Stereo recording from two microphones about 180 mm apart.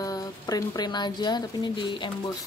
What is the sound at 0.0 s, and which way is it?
A woman's voice, 20° left (ahead or behind).